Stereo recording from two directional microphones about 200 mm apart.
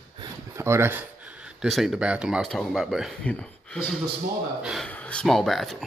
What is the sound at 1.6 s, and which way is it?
Speech, centre (ahead or behind).